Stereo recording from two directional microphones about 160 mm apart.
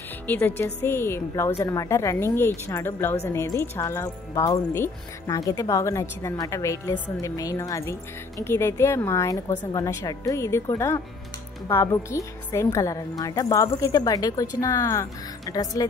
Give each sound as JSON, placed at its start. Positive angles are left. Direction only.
{"t": 0.3, "sound": "a woman's voice", "side_deg": 15}